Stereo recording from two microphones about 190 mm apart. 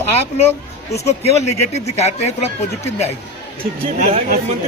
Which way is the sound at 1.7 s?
35° left (ahead or behind).